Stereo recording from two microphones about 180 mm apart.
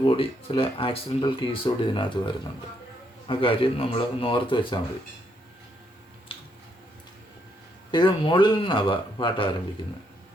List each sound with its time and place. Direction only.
0.0 s speech: 30° left (ahead or behind)
7.9 s speech: 25° left (ahead or behind)